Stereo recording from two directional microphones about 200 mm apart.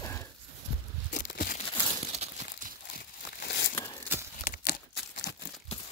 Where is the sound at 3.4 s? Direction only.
55° left (ahead or behind).